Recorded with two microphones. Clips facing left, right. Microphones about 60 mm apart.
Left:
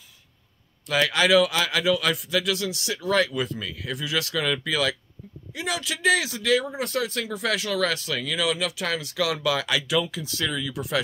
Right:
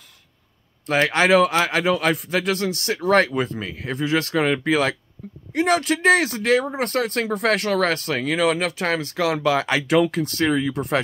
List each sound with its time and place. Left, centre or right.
0.8 s a man's voice: right
5.5 s a man's voice: right
9.9 s a man's voice: right